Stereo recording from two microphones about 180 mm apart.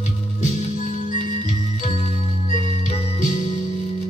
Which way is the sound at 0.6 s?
40° left (ahead or behind).